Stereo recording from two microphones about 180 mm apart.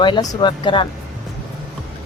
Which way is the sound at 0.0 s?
25° left (ahead or behind).